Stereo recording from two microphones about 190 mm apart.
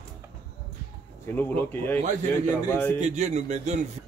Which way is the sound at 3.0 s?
40° right (ahead or behind).